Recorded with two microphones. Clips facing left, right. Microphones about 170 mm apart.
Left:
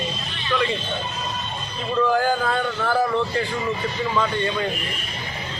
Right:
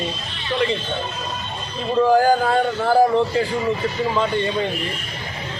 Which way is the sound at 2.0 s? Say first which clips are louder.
Right 5 dB; 35° right (ahead or behind).